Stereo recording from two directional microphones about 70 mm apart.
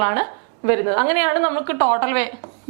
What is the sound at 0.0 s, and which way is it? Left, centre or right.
A woman's voice, centre.